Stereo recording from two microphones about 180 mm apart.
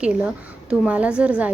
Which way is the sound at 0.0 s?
5° right (ahead or behind).